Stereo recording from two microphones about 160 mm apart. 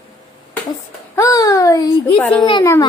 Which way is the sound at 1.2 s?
20° left (ahead or behind).